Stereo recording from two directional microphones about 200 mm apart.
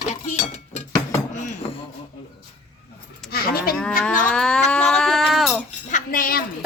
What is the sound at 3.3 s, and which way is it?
Livestock, 50° left (ahead or behind).